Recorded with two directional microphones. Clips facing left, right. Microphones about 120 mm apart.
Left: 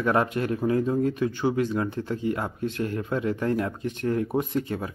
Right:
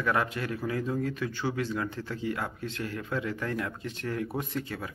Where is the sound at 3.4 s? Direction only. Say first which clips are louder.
Left 7 dB; 25° left (ahead or behind).